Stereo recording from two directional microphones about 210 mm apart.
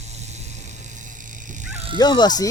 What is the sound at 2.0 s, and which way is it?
Speech, 20° left (ahead or behind).